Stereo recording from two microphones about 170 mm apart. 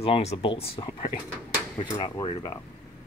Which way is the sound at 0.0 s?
35° left (ahead or behind).